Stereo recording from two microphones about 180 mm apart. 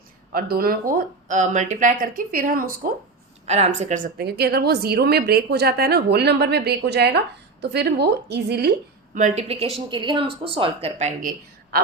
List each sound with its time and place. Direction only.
0.3 s speech: 55° right (ahead or behind)
3.4 s a woman's voice: 35° right (ahead or behind); by 8.7 s 65° right (ahead or behind)
9.1 s a woman's voice: 40° right (ahead or behind)